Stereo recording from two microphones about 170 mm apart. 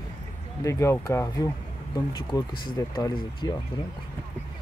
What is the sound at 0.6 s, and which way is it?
Speech, 15° left (ahead or behind).